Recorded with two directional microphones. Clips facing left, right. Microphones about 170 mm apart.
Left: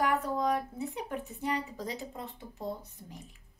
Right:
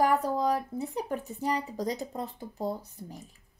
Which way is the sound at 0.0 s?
35° right (ahead or behind).